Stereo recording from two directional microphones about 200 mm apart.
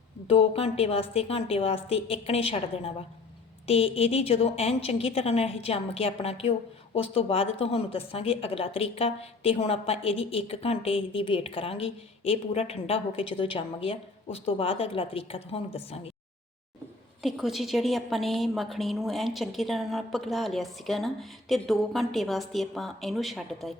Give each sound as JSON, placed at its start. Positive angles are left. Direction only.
{"t": 0.3, "sound": "speech", "side_deg": 30}
{"t": 17.2, "sound": "a woman's voice", "side_deg": 0}